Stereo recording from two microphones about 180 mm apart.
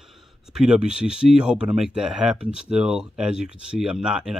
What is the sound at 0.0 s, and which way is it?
Speech, centre (ahead or behind).